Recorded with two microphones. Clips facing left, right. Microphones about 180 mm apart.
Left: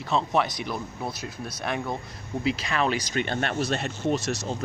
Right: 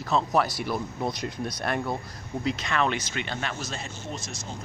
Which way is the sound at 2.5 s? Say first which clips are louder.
Right 1 dB; 30° left (ahead or behind).